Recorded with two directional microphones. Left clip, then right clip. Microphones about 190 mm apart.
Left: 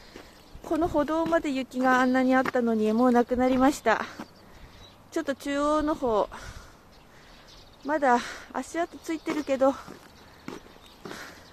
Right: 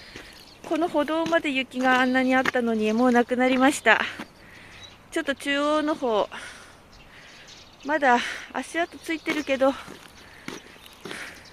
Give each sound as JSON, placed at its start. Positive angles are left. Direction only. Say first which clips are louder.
{"t": 0.7, "sound": "speech", "louder": "right 2 dB", "side_deg": 5}
{"t": 3.1, "sound": "speech", "louder": "right 4 dB", "side_deg": -5}
{"t": 7.8, "sound": "speech", "louder": "right 3 dB", "side_deg": 0}